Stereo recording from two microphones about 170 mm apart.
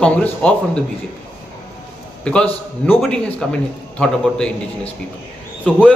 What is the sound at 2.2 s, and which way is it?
A man's voice, 5° left (ahead or behind).